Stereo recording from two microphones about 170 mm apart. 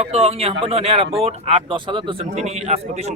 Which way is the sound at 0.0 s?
35° right (ahead or behind).